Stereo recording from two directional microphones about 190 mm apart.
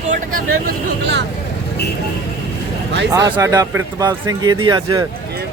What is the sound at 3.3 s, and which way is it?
Speech, 15° right (ahead or behind).